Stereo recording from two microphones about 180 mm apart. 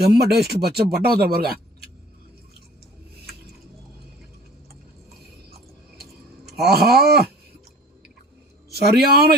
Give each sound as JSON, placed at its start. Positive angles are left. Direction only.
{"t": 0.0, "sound": "a man's voice", "side_deg": -60}
{"t": 6.7, "sound": "a man's voice", "side_deg": -60}
{"t": 8.7, "sound": "a man's voice", "side_deg": -60}